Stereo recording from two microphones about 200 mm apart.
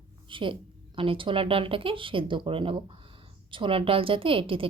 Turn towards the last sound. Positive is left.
turn(degrees=-25)  # may be behind; listen again after turning